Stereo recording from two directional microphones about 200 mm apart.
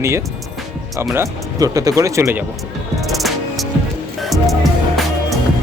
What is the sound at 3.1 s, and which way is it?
Music, centre (ahead or behind).